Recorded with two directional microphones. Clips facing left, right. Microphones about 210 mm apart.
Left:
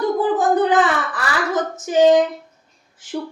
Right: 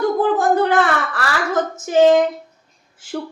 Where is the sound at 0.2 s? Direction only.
15° left (ahead or behind).